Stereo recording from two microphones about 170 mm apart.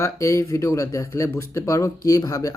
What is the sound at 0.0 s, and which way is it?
Speech, 15° left (ahead or behind).